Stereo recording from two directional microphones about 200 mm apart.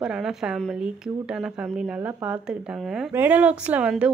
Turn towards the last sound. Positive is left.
turn(degrees=-5)  # may be behind; listen again after turning